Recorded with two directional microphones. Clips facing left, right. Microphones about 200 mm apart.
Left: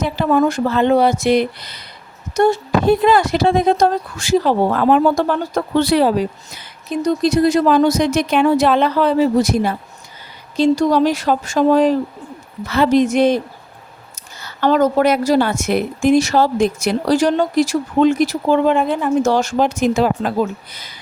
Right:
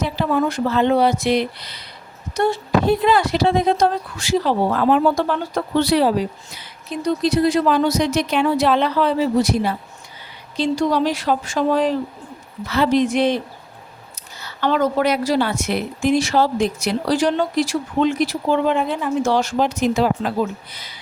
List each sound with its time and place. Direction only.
0.0 s a woman's voice: 50° left (ahead or behind)
14.4 s a woman's voice: 45° left (ahead or behind)